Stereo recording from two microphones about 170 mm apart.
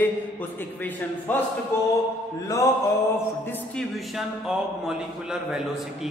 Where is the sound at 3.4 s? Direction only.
Centre (ahead or behind).